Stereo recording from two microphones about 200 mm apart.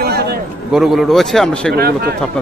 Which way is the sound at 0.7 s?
Centre (ahead or behind).